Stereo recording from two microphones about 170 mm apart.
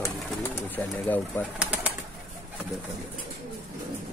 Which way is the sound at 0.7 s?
10° left (ahead or behind).